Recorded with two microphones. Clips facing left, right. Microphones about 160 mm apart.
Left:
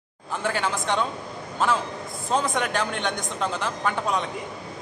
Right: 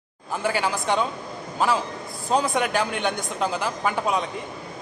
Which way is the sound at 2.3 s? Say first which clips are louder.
Right 2 dB; 5° right (ahead or behind).